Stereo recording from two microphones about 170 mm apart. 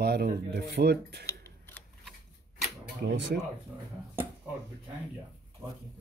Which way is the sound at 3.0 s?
90° right.